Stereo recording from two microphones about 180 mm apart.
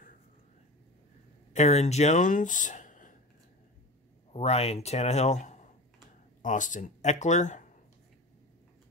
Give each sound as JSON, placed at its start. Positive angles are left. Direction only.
{"t": 1.5, "sound": "speech", "side_deg": 40}
{"t": 4.3, "sound": "speech", "side_deg": 35}